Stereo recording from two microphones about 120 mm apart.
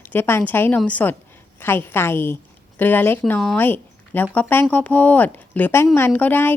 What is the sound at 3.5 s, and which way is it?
A woman's voice, 15° left (ahead or behind).